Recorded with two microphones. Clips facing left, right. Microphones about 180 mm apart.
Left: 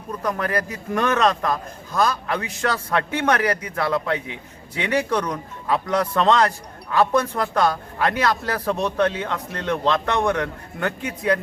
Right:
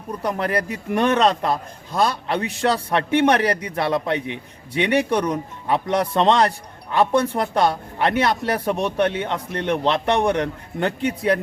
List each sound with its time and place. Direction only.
0.2 s a man's voice: 25° right (ahead or behind)